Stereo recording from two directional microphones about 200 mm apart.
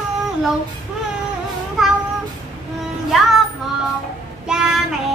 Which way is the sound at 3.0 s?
Centre (ahead or behind).